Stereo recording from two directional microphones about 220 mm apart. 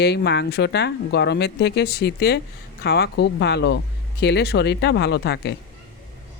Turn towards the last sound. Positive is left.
turn(degrees=50)  # may be behind; listen again after turning